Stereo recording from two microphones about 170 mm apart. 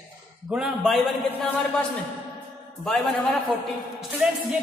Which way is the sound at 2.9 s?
Centre (ahead or behind).